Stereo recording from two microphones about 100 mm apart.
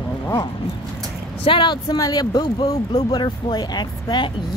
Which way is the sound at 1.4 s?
55° left (ahead or behind).